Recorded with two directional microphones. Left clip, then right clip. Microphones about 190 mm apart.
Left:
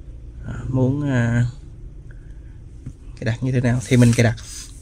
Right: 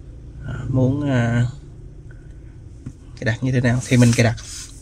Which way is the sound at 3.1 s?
20° left (ahead or behind).